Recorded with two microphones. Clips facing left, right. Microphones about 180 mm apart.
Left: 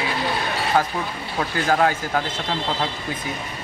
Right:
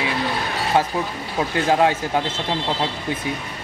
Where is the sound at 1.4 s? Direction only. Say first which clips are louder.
Right 2 dB; 20° right (ahead or behind).